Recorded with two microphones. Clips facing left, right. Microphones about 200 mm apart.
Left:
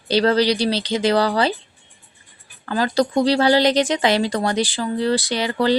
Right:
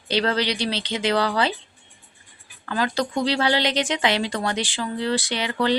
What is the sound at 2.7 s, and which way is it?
Speech, 35° left (ahead or behind).